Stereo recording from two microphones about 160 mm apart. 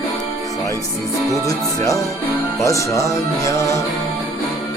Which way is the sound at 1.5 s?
20° left (ahead or behind).